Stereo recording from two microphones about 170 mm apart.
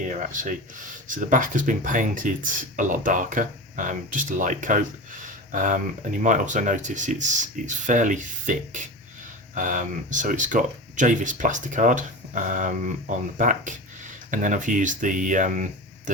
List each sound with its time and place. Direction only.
0.2 s speech: 50° right (ahead or behind)